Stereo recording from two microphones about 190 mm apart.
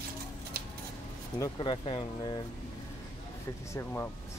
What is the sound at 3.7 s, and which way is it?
Speech, 10° left (ahead or behind).